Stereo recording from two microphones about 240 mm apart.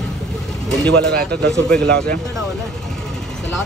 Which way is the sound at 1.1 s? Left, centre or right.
Right.